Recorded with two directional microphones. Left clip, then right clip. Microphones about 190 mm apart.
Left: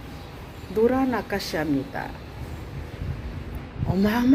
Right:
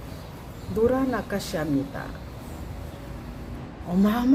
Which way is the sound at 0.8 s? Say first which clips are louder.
Left 1 dB; centre (ahead or behind).